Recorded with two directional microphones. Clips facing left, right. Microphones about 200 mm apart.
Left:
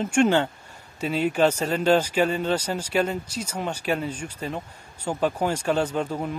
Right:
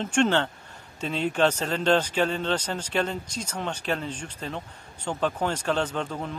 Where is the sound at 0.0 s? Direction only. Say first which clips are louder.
Left 3 dB; 10° left (ahead or behind).